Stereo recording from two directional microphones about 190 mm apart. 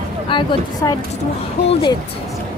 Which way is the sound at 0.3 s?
25° left (ahead or behind).